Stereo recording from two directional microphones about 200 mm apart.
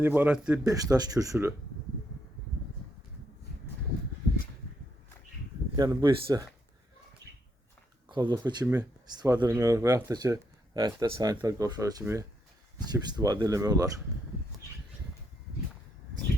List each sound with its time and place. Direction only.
0.0 s speech: 10° right (ahead or behind)
0.6 s speech: 15° right (ahead or behind)
5.7 s speech: 20° right (ahead or behind)
8.1 s speech: 20° right (ahead or behind)